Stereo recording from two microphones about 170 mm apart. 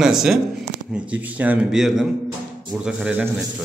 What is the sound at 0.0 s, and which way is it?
Speech, 5° right (ahead or behind).